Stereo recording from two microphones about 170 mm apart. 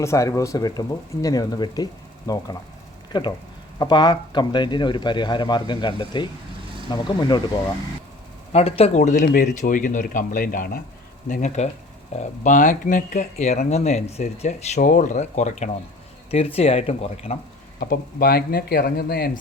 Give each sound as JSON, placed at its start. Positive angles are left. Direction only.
{"t": 0.0, "sound": "speech", "side_deg": 15}
{"t": 8.5, "sound": "speech", "side_deg": 35}
{"t": 17.7, "sound": "speech", "side_deg": 60}